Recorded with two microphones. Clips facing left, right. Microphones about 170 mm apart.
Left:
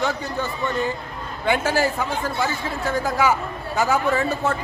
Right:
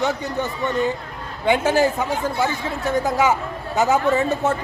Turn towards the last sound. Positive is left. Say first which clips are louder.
# right 3 dB
turn(degrees=-20)  # may be behind; listen again after turning